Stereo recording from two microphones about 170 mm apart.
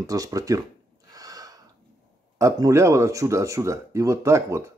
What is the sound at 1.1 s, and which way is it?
Snort, 20° right (ahead or behind).